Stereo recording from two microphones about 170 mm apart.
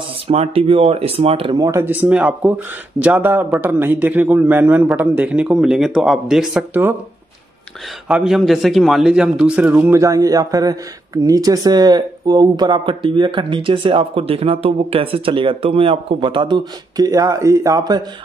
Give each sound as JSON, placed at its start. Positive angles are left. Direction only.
{"t": 0.3, "sound": "speech", "side_deg": -35}
{"t": 1.7, "sound": "speech", "side_deg": -10}
{"t": 8.1, "sound": "a man's voice", "side_deg": -5}